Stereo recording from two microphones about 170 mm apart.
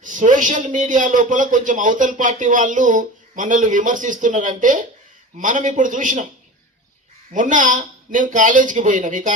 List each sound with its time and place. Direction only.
0.0 s a man's voice: 50° right (ahead or behind)
7.3 s a man's voice: 50° right (ahead or behind)